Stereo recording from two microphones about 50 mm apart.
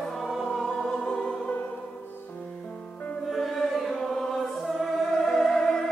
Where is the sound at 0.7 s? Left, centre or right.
Centre.